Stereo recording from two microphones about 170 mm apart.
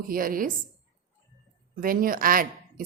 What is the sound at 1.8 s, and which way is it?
A woman's voice, 55° right (ahead or behind).